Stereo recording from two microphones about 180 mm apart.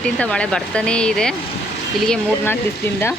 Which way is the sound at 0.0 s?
5° left (ahead or behind).